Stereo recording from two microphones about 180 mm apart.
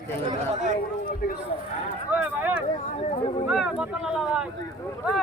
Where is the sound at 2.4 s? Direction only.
10° right (ahead or behind).